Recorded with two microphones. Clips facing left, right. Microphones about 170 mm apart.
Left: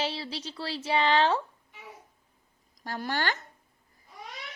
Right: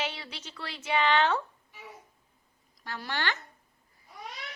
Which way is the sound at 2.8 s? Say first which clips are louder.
Left 3 dB; 45° left (ahead or behind).